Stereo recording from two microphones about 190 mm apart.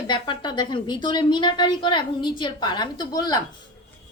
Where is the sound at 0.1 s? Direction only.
25° left (ahead or behind).